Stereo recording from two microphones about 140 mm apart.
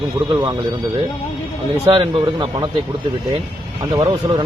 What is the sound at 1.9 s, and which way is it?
Speech, 40° right (ahead or behind).